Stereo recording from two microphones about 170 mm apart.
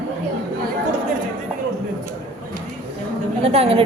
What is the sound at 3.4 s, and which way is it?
Speech, 35° right (ahead or behind).